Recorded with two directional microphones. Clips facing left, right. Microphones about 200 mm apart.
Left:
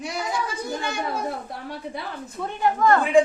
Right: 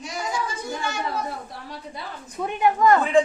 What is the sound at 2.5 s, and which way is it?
Speech, 15° right (ahead or behind).